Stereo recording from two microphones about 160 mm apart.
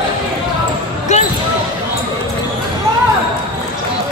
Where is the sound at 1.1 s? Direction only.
45° left (ahead or behind).